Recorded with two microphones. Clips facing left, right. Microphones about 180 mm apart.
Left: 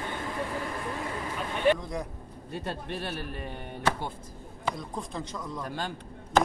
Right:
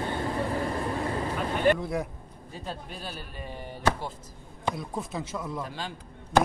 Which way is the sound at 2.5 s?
70° left (ahead or behind).